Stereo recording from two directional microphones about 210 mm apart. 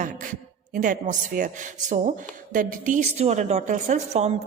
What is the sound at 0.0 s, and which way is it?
A man's voice, 40° right (ahead or behind).